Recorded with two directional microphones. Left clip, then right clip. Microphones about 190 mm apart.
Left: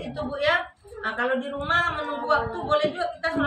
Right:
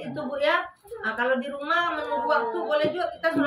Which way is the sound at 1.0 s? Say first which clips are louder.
Even; 15° left (ahead or behind).